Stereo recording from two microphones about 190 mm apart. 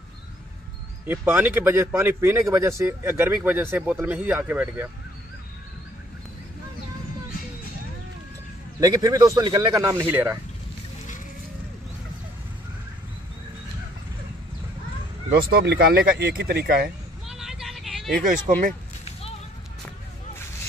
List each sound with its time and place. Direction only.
1.0 s speech: 10° right (ahead or behind)
8.7 s speech: 20° right (ahead or behind)
15.3 s speech: 50° right (ahead or behind)
17.3 s vehicle: centre (ahead or behind)
18.1 s speech: 45° right (ahead or behind)